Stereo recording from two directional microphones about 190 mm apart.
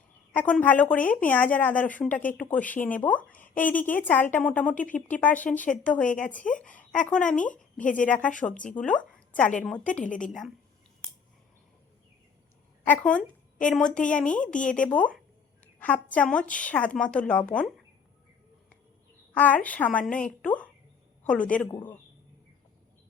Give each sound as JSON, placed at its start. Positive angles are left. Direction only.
{"t": 0.3, "sound": "speech", "side_deg": 10}
{"t": 12.8, "sound": "a woman's voice", "side_deg": 10}
{"t": 19.3, "sound": "speech", "side_deg": 10}
{"t": 21.7, "sound": "speech", "side_deg": 25}